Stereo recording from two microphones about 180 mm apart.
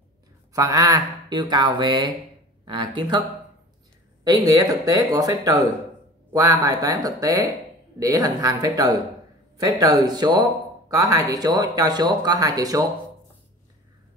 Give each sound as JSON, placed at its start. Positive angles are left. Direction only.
{"t": 0.5, "sound": "speech", "side_deg": -20}
{"t": 4.2, "sound": "speech", "side_deg": -20}